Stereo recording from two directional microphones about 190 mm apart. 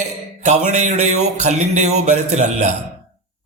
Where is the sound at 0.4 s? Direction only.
35° right (ahead or behind).